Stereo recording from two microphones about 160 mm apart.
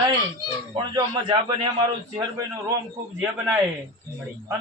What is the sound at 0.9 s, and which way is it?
Speech, 30° right (ahead or behind).